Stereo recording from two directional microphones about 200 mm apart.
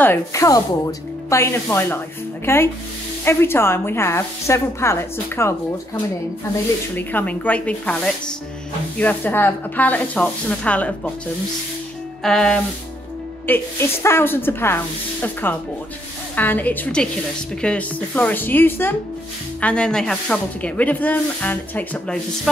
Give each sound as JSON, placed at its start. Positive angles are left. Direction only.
{"t": 0.0, "sound": "speech", "side_deg": 15}
{"t": 7.0, "sound": "speech", "side_deg": 10}
{"t": 12.2, "sound": "music", "side_deg": 5}
{"t": 13.5, "sound": "speech", "side_deg": 10}